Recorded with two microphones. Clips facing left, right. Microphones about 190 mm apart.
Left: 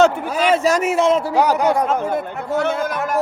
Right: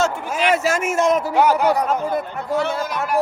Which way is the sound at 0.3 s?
35° left (ahead or behind).